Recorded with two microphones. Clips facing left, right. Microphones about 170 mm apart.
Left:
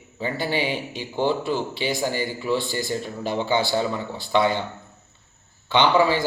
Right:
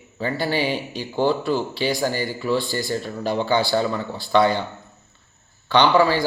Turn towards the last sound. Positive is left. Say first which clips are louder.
# right 2 dB
turn(degrees=20)  # may be behind; listen again after turning